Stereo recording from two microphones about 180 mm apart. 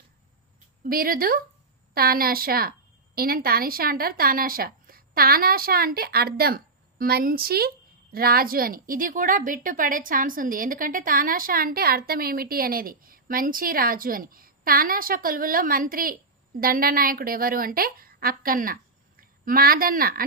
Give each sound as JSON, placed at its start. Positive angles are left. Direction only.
{"t": 0.9, "sound": "a woman's voice", "side_deg": -55}